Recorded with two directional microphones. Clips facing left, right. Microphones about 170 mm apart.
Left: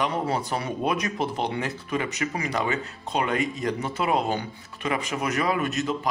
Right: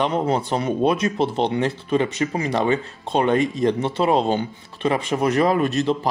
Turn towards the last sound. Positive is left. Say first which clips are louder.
# right 6 dB
turn(degrees=-30)  # may be behind; listen again after turning